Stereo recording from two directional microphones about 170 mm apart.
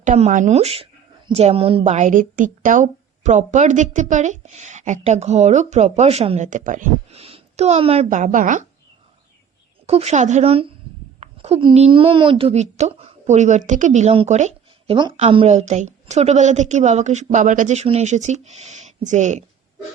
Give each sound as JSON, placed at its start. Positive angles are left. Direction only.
{"t": 0.0, "sound": "a woman's voice", "side_deg": -45}
{"t": 7.2, "sound": "a woman's voice", "side_deg": -35}
{"t": 9.8, "sound": "a woman's voice", "side_deg": -40}